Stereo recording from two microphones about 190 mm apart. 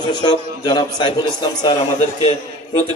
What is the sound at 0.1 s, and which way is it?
A man's voice, 20° left (ahead or behind).